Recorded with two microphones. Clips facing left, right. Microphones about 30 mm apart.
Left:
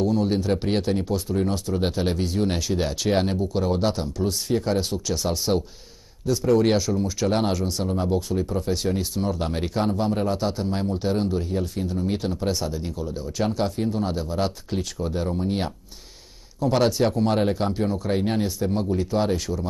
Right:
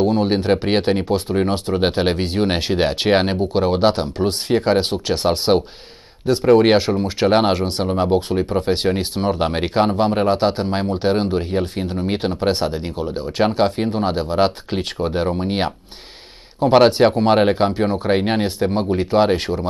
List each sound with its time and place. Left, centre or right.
0.0 s speech: right